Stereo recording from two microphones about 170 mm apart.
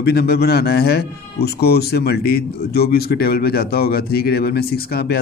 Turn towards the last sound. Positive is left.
turn(degrees=65)  # may be behind; listen again after turning